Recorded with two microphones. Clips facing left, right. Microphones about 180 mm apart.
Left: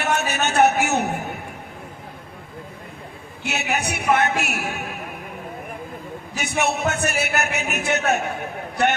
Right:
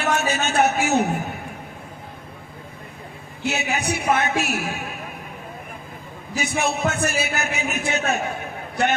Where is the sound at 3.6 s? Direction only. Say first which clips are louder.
Left 3 dB; 65° left (ahead or behind).